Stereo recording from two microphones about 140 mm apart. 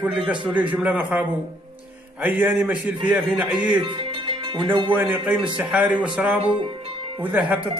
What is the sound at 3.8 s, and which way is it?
Music, 40° right (ahead or behind).